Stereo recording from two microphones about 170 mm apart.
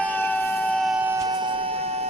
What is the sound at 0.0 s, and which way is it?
Siren, 10° left (ahead or behind).